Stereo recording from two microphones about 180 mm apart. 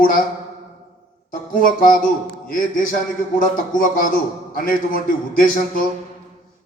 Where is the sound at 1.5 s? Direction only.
50° left (ahead or behind).